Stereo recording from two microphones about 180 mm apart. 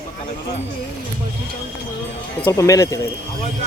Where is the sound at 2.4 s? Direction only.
15° left (ahead or behind).